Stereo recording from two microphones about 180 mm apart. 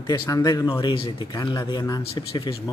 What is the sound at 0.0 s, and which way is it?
Speech, 20° left (ahead or behind).